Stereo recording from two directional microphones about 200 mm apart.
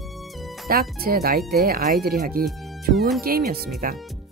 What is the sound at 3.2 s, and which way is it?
Speech, 50° right (ahead or behind).